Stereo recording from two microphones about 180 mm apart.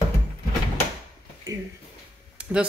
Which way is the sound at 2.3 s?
5° right (ahead or behind).